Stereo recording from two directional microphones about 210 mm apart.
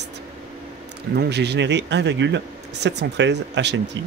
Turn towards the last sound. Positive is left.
turn(degrees=-55)  # may be behind; listen again after turning